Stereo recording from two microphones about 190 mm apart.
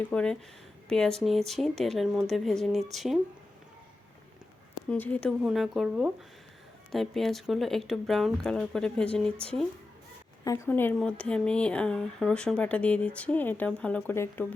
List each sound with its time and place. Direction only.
0.1 s speech: 5° left (ahead or behind)
4.9 s speech: 10° left (ahead or behind)
5.4 s speech: 5° right (ahead or behind)
10.4 s speech: 20° left (ahead or behind)